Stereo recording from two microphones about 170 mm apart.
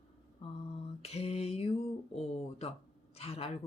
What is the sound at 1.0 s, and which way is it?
Lullaby, 40° left (ahead or behind).